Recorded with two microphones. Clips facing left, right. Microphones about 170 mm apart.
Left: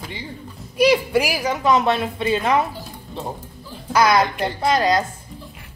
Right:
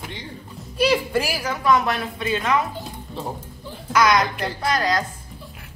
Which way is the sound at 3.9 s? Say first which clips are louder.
Left 2 dB; 30° left (ahead or behind).